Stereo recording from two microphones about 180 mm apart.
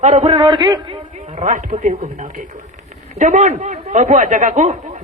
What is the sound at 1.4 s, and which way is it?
A man's voice, 45° right (ahead or behind).